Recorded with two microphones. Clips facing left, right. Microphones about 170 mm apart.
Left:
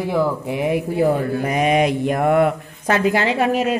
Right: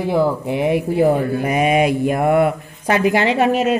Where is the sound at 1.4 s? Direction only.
10° right (ahead or behind).